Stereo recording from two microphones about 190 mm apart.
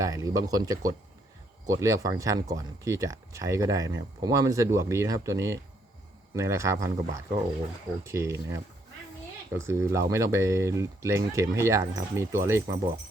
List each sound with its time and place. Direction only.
0.0 s speech: 15° right (ahead or behind)